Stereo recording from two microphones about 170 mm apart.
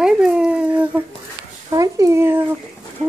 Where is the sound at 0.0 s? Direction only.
5° right (ahead or behind).